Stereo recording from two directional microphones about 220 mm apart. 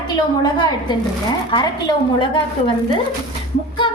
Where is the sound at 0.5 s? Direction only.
20° left (ahead or behind).